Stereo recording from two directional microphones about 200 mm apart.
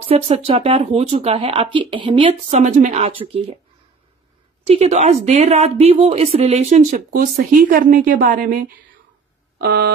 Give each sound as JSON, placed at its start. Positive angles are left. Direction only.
{"t": 0.1, "sound": "speech", "side_deg": -30}
{"t": 2.5, "sound": "a woman's voice", "side_deg": -40}
{"t": 4.6, "sound": "a woman's voice", "side_deg": -30}
{"t": 9.6, "sound": "a sound", "side_deg": -55}